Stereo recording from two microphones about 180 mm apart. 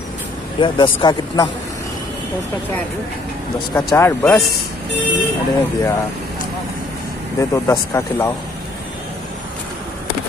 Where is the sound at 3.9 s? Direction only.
15° left (ahead or behind).